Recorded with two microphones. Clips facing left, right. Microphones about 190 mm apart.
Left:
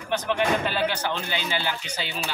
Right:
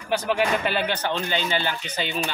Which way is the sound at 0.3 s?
5° right (ahead or behind).